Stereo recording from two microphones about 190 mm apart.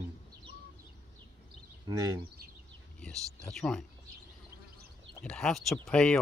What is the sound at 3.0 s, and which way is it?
Speech, centre (ahead or behind).